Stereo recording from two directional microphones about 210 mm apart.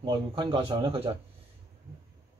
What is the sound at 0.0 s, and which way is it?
Speech, 20° right (ahead or behind).